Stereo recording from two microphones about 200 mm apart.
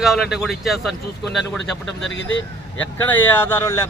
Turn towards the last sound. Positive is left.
turn(degrees=10)  # may be behind; listen again after turning